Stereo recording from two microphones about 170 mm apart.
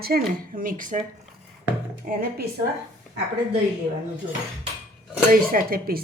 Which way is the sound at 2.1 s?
50° right (ahead or behind).